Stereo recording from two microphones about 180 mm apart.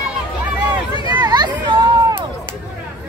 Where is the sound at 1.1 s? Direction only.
25° right (ahead or behind).